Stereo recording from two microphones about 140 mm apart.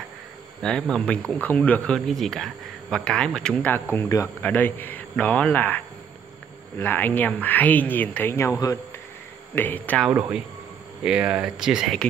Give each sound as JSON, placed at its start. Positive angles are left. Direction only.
{"t": 0.6, "sound": "speech", "side_deg": 5}
{"t": 3.9, "sound": "speech", "side_deg": 20}
{"t": 6.8, "sound": "speech", "side_deg": 15}
{"t": 11.1, "sound": "speech", "side_deg": -5}